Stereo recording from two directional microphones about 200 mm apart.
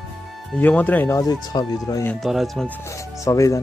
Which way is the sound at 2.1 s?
Centre (ahead or behind).